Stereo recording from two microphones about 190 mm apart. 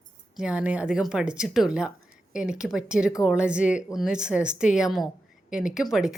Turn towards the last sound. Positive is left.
turn(degrees=-5)  # may be behind; listen again after turning